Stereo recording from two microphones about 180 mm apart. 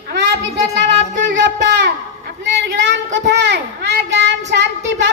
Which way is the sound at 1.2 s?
75° right (ahead or behind).